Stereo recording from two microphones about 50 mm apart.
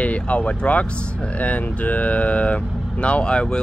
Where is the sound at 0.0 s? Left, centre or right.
Left.